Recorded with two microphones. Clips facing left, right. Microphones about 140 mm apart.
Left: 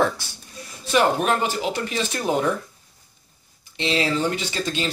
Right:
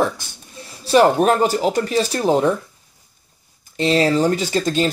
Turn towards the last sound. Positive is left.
turn(degrees=-40)  # may be behind; listen again after turning